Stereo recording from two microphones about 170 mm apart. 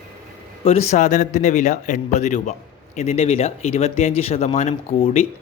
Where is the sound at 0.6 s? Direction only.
40° left (ahead or behind).